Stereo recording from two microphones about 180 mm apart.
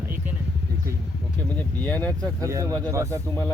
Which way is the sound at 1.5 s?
10° left (ahead or behind).